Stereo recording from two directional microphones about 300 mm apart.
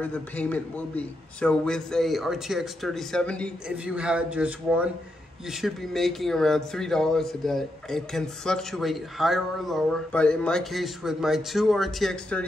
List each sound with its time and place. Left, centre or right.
0.0 s speech: centre